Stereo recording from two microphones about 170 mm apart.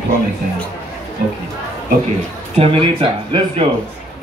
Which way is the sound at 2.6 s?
35° right (ahead or behind).